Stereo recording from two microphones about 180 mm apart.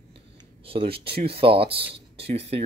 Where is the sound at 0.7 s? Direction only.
30° right (ahead or behind).